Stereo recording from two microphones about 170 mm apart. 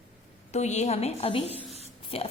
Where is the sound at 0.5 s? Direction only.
40° left (ahead or behind).